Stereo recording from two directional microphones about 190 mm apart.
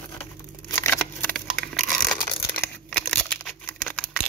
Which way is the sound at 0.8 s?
10° left (ahead or behind).